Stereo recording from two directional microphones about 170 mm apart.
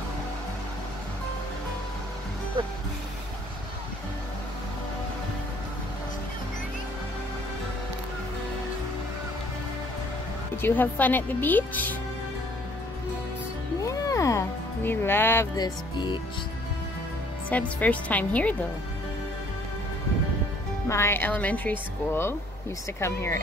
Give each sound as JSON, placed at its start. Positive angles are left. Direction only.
{"t": 10.5, "sound": "speech", "side_deg": 10}
{"t": 13.8, "sound": "music", "side_deg": 20}
{"t": 15.5, "sound": "music", "side_deg": 25}
{"t": 17.5, "sound": "speech", "side_deg": 10}
{"t": 20.9, "sound": "speech", "side_deg": 15}